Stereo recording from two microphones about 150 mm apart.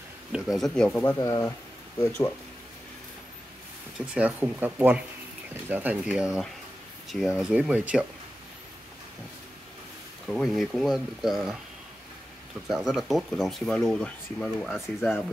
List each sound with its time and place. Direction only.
0.3 s speech: centre (ahead or behind)
1.1 s speech: 25° left (ahead or behind)
4.0 s speech: 10° right (ahead or behind)
10.2 s speech: centre (ahead or behind)
12.6 s speech: 5° right (ahead or behind)
15.0 s speech: 15° left (ahead or behind)